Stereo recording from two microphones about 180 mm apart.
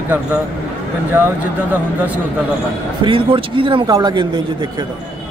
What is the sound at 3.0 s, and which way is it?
Speech, 30° right (ahead or behind).